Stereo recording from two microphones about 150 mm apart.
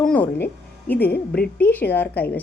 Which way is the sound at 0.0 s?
10° left (ahead or behind).